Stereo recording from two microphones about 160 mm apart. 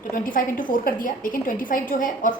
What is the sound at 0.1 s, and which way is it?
A woman's voice, 60° left (ahead or behind).